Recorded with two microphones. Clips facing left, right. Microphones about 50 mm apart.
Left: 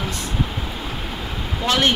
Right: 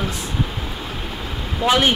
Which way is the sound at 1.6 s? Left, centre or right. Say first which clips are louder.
Right 2 dB; centre.